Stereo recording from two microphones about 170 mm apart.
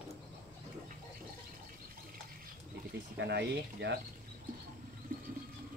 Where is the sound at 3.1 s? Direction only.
85° right.